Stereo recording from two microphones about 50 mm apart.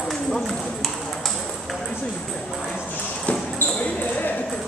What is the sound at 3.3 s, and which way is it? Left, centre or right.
Basketball bounce, left.